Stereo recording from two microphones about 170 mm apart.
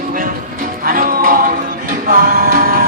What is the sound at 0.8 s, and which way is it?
Music, 60° right (ahead or behind).